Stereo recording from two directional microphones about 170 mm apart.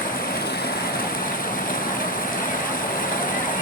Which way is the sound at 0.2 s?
60° left (ahead or behind).